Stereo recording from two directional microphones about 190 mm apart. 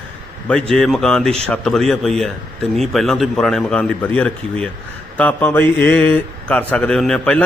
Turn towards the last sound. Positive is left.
turn(degrees=5)  # may be behind; listen again after turning